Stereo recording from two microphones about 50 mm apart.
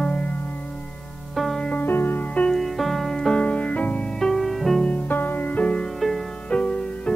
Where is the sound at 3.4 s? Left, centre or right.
Left.